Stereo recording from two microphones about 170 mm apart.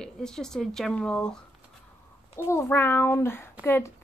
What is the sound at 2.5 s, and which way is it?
Speech, 15° left (ahead or behind).